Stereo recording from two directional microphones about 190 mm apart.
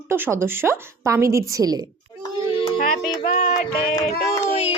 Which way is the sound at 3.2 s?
45° left (ahead or behind).